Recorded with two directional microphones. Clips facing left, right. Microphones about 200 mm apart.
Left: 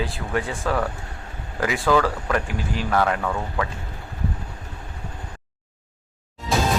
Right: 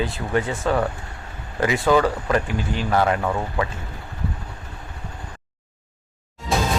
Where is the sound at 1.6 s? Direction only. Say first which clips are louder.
Right 3 dB; centre (ahead or behind).